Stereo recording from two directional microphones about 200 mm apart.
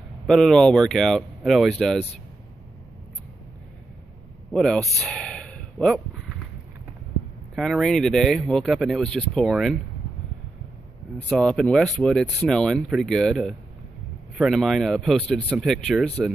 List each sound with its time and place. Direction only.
0.3 s speech: centre (ahead or behind)
4.5 s a sound: centre (ahead or behind)
7.5 s speech: centre (ahead or behind)
11.2 s speech: 5° left (ahead or behind)